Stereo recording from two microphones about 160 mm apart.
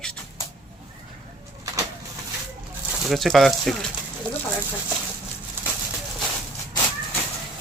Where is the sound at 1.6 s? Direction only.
20° right (ahead or behind).